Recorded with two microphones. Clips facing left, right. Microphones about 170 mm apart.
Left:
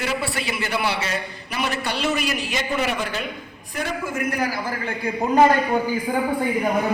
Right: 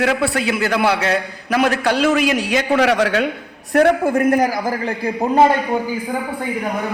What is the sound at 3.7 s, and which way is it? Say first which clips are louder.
Speech: right 14 dB; 60° right (ahead or behind).